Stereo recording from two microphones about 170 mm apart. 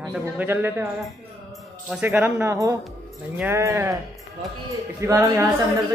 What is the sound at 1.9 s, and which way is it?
Speech, 10° right (ahead or behind).